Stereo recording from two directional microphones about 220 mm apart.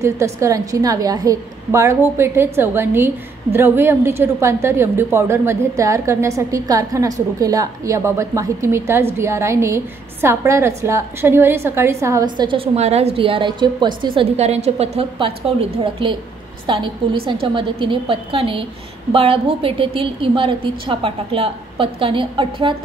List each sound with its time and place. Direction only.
0.0 s a woman's voice: 15° right (ahead or behind)
12.4 s a woman's voice: 25° right (ahead or behind)